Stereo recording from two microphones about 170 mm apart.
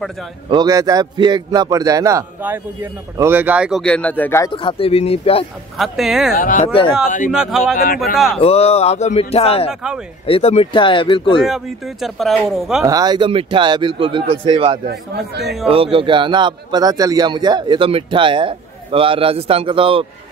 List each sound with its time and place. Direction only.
0.5 s a man's voice: 25° right (ahead or behind); by 3.8 s 5° right (ahead or behind)
3.8 s speech: 10° left (ahead or behind)
4.5 s speech: 30° left (ahead or behind)
5.8 s speech: centre (ahead or behind)
6.3 s speech: 55° left (ahead or behind)
6.7 s speech: 30° left (ahead or behind)
7.2 s speech: 5° right (ahead or behind)
8.4 s speech: 35° left (ahead or behind)
11.4 s speech: centre (ahead or behind)
12.8 s a man's voice: 20° right (ahead or behind)
14.9 s speech: 70° right (ahead or behind)
15.4 s speech: centre (ahead or behind)
15.7 s a man's voice: 35° right (ahead or behind)